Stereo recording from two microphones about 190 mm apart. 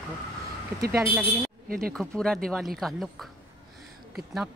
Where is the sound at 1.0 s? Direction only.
15° right (ahead or behind).